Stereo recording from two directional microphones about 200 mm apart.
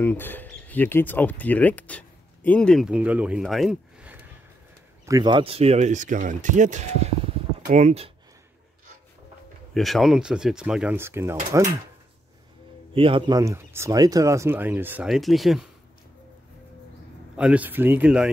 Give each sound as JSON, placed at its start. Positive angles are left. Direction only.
{"t": 0.0, "sound": "speech", "side_deg": 10}
{"t": 5.0, "sound": "speech", "side_deg": -20}
{"t": 9.8, "sound": "speech", "side_deg": 0}
{"t": 12.9, "sound": "speech", "side_deg": -25}
{"t": 17.4, "sound": "speech", "side_deg": -5}